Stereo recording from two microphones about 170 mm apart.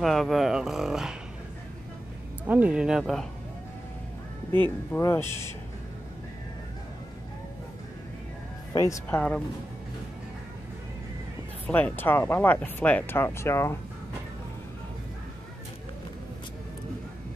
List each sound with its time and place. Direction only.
0.0 s speech: centre (ahead or behind)
2.4 s speech: 10° right (ahead or behind)
4.6 s speech: 15° left (ahead or behind)
8.7 s speech: 20° left (ahead or behind)
11.6 s speech: 10° left (ahead or behind)